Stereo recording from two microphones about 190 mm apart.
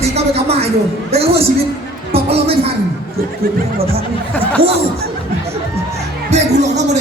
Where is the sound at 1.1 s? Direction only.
30° right (ahead or behind).